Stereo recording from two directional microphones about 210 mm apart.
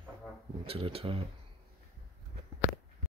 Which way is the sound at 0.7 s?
25° right (ahead or behind).